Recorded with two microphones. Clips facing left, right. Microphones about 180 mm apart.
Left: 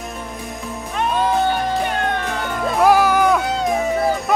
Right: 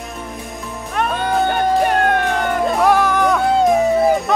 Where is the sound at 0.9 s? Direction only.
60° right (ahead or behind).